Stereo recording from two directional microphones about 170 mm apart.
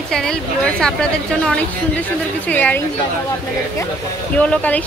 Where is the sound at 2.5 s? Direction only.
10° left (ahead or behind).